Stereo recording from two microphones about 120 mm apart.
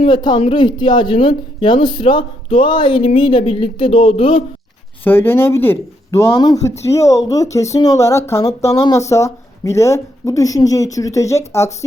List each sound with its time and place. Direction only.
0.0 s speech: 40° left (ahead or behind)
5.0 s a woman's voice: 20° left (ahead or behind)
6.3 s a woman's voice: 35° left (ahead or behind)